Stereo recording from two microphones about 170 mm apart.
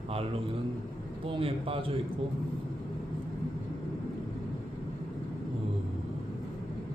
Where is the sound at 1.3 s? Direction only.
35° right (ahead or behind).